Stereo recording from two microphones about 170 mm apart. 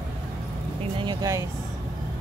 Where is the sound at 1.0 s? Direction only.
25° right (ahead or behind).